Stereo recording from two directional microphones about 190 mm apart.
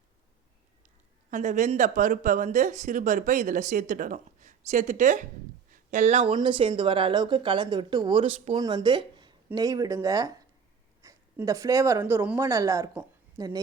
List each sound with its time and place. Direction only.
1.3 s speech: 40° right (ahead or behind); by 13.4 s 10° right (ahead or behind)